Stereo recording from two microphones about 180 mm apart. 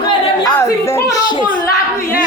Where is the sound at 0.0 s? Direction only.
20° left (ahead or behind).